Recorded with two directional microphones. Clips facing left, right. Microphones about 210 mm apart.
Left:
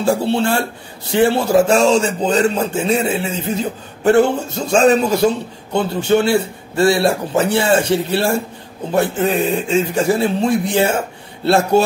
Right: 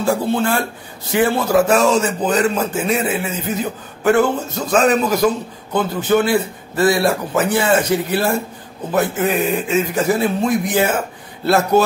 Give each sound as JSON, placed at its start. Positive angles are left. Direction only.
{"t": 0.0, "sound": "speech", "side_deg": 30}